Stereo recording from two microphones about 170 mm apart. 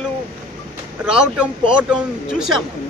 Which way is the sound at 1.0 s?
5° right (ahead or behind).